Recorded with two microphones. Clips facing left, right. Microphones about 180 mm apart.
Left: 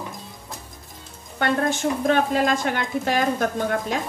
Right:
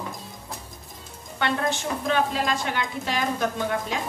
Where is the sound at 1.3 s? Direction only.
45° left (ahead or behind).